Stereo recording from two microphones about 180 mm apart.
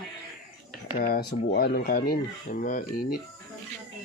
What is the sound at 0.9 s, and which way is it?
Dishes, 55° left (ahead or behind).